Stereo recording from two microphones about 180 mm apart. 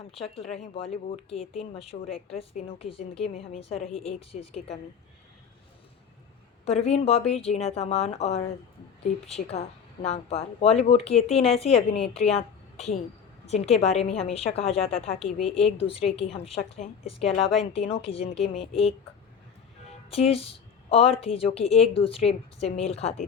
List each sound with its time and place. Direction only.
0.1 s a woman's voice: 35° left (ahead or behind)
6.7 s a woman's voice: 35° left (ahead or behind)
20.1 s a woman's voice: 35° left (ahead or behind)